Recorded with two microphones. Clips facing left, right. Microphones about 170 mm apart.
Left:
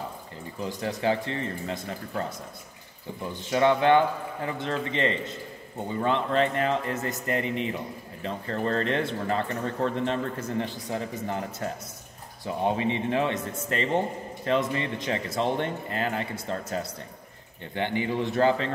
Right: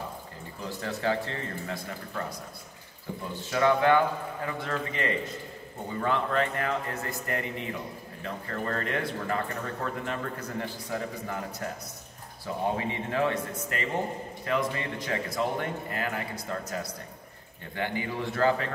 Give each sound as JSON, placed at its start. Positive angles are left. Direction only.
{"t": 0.7, "sound": "speech", "side_deg": 15}
{"t": 3.3, "sound": "a man's voice", "side_deg": 20}